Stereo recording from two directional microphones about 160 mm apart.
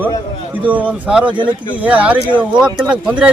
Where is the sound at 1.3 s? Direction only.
30° right (ahead or behind).